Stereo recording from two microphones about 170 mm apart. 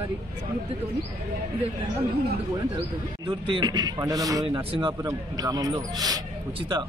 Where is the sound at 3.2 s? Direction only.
30° right (ahead or behind).